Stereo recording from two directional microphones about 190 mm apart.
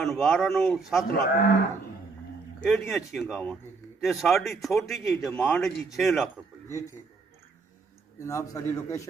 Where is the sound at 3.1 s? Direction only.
Centre (ahead or behind).